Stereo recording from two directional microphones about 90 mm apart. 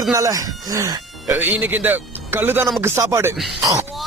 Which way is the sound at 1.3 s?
20° right (ahead or behind).